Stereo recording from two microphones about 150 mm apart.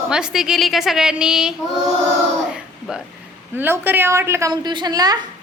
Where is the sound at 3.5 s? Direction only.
15° right (ahead or behind).